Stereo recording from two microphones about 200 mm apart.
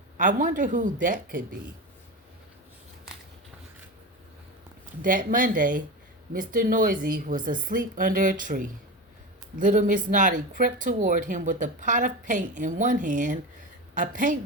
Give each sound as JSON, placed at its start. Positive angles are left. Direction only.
{"t": 0.2, "sound": "speech", "side_deg": -40}
{"t": 5.0, "sound": "a woman's voice", "side_deg": -40}